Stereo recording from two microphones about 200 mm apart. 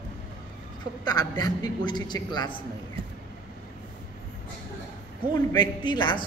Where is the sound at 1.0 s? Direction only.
20° left (ahead or behind).